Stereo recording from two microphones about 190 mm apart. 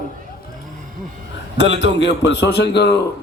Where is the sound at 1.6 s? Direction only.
65° left (ahead or behind).